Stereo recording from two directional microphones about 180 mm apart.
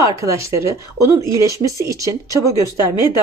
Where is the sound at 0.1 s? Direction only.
15° right (ahead or behind).